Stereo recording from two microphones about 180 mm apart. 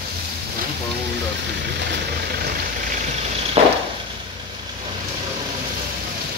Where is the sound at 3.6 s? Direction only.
40° right (ahead or behind).